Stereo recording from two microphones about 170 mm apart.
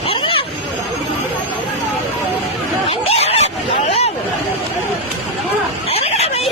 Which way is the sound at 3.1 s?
40° left (ahead or behind).